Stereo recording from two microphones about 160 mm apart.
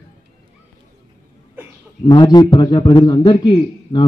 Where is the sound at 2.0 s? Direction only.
25° left (ahead or behind).